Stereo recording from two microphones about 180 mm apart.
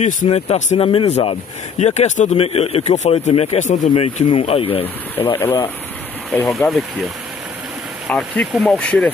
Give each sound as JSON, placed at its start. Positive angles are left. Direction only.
{"t": 0.0, "sound": "speech", "side_deg": 40}
{"t": 4.8, "sound": "speech", "side_deg": 10}
{"t": 8.1, "sound": "speech", "side_deg": 0}